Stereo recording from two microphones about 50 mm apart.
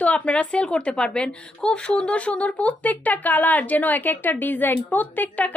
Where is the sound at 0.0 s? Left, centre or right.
Left.